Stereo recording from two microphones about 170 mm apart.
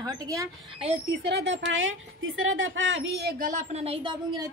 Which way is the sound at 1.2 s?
80° right.